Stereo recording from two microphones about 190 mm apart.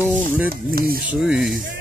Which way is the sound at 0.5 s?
55° right (ahead or behind).